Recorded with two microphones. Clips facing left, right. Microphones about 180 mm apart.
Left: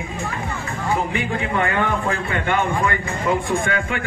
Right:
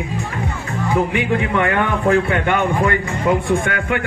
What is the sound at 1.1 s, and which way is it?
A man's voice, 65° right (ahead or behind).